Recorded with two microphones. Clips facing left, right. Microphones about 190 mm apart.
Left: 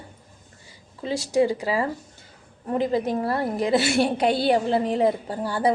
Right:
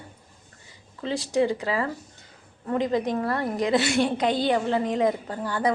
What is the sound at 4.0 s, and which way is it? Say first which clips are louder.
Speech: left 2 dB; 10° left (ahead or behind).